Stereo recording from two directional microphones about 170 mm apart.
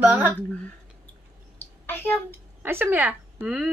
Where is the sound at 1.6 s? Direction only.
10° left (ahead or behind).